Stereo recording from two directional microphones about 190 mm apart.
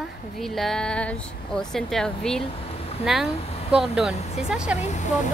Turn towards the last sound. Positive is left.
turn(degrees=35)  # may be behind; listen again after turning